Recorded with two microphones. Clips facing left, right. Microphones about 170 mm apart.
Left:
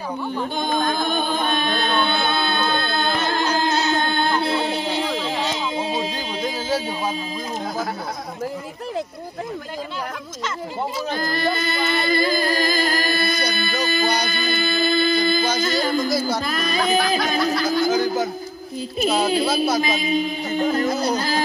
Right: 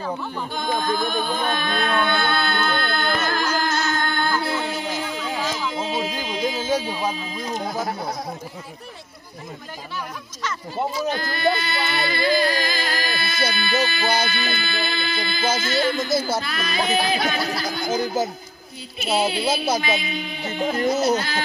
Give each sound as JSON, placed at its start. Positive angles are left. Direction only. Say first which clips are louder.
{"t": 0.9, "sound": "music", "louder": "left 1 dB", "side_deg": 25}
{"t": 11.1, "sound": "a sound", "louder": "even", "side_deg": 40}
{"t": 15.6, "sound": "speech", "louder": "left 2 dB", "side_deg": 40}
{"t": 18.9, "sound": "speech", "louder": "left 3 dB", "side_deg": 40}
{"t": 19.4, "sound": "speech", "louder": "left 2 dB", "side_deg": 0}
{"t": 19.8, "sound": "speech", "louder": "left 5 dB", "side_deg": 40}